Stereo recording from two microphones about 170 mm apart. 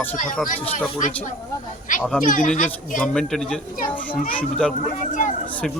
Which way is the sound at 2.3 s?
50° left (ahead or behind).